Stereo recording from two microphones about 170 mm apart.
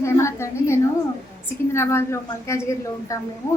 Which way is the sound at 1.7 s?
15° left (ahead or behind).